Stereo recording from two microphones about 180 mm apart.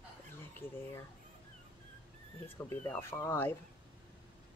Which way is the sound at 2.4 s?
10° left (ahead or behind).